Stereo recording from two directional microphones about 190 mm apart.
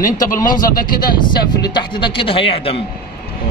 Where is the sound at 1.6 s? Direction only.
25° left (ahead or behind).